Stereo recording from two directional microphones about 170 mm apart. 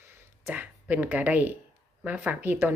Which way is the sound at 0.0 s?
15° right (ahead or behind).